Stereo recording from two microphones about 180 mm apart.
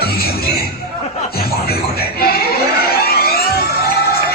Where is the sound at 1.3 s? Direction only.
60° left (ahead or behind).